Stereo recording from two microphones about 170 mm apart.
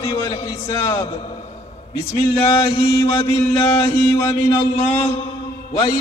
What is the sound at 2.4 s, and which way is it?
Mantra, 15° left (ahead or behind).